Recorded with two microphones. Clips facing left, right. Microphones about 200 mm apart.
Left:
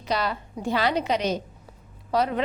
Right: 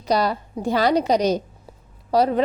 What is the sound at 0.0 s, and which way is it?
A woman's voice, 40° right (ahead or behind).